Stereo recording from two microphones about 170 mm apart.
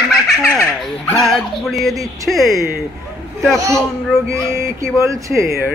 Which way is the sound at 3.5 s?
20° right (ahead or behind).